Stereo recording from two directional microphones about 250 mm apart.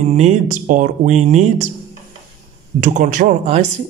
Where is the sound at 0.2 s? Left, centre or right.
Right.